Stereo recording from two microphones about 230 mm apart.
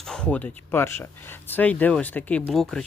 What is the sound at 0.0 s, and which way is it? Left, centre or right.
Speech, centre.